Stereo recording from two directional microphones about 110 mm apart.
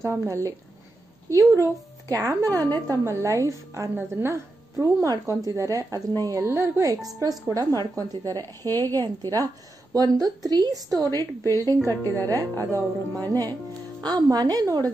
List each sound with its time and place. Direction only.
0.0 s a woman's voice: 30° right (ahead or behind)
11.1 s a woman's voice: 25° left (ahead or behind)
11.5 s a woman's voice: 35° right (ahead or behind)